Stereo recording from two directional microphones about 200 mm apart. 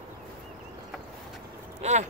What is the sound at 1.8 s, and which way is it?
Speech, 35° right (ahead or behind).